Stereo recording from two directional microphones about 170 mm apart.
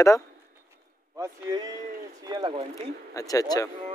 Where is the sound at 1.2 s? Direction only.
25° right (ahead or behind).